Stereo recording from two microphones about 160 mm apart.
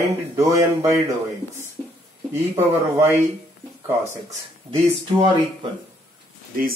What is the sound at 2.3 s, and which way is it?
Speech, 15° right (ahead or behind).